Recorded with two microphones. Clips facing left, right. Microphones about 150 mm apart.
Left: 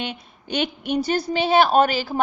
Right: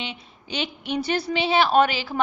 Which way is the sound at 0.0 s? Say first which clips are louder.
Left 4 dB; 50° left (ahead or behind).